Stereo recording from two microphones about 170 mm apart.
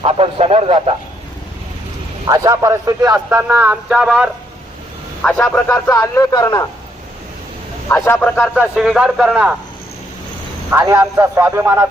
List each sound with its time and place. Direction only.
0.0 s a man's voice: 35° right (ahead or behind)
2.2 s a man's voice: 20° right (ahead or behind); by 4.3 s 5° right (ahead or behind)
5.2 s speech: 5° left (ahead or behind)
5.9 s speech: 20° left (ahead or behind)
7.9 s speech: 15° left (ahead or behind)
8.7 s a man's voice: centre (ahead or behind)
10.7 s a man's voice: 15° right (ahead or behind)